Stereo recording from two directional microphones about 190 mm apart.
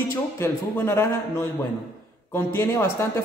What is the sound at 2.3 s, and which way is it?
Speech, 15° left (ahead or behind).